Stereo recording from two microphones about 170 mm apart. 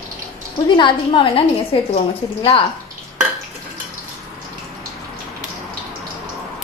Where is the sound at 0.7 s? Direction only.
30° left (ahead or behind).